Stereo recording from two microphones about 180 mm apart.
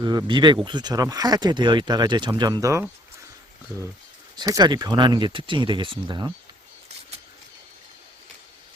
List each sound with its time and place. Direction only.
0.0 s speech: 25° right (ahead or behind)
4.4 s speech: 20° right (ahead or behind)